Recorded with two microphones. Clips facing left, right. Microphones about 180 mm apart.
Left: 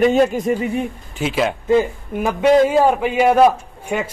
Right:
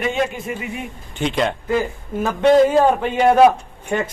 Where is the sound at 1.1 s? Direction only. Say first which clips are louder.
Even; 5° left (ahead or behind).